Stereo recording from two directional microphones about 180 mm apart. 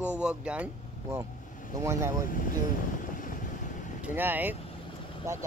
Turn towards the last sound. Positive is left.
turn(degrees=-15)  # may be behind; listen again after turning